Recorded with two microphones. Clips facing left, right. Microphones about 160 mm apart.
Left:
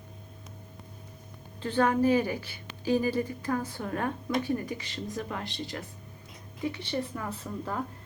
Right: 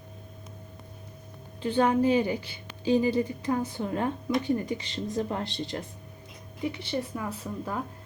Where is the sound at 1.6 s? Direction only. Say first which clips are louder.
Right 2 dB; 20° right (ahead or behind).